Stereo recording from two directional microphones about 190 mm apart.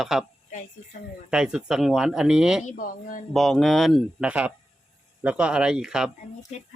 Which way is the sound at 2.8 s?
45° left (ahead or behind).